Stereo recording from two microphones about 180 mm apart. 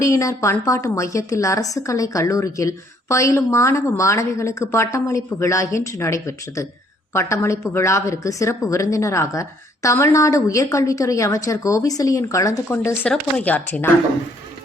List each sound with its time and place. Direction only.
0.0 s a woman's voice: 15° left (ahead or behind)